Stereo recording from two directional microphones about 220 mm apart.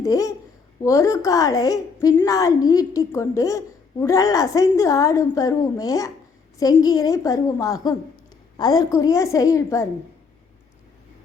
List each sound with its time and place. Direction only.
0.0 s a woman's voice: 15° left (ahead or behind)